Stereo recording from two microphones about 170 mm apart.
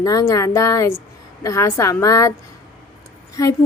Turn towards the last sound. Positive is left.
turn(degrees=20)  # may be behind; listen again after turning